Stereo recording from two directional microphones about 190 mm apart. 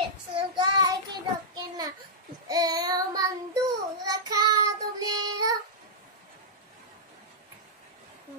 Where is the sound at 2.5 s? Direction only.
20° right (ahead or behind).